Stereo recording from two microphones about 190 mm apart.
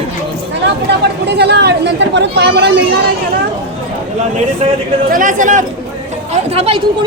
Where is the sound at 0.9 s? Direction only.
60° right (ahead or behind).